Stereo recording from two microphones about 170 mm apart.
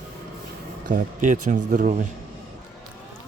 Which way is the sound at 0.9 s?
50° right (ahead or behind).